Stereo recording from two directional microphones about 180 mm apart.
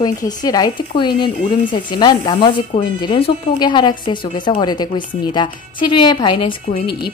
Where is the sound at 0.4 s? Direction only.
20° left (ahead or behind).